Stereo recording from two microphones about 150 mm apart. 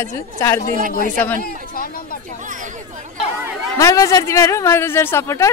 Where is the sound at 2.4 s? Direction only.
60° right (ahead or behind).